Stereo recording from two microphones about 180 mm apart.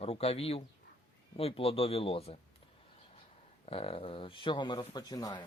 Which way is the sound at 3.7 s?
30° left (ahead or behind).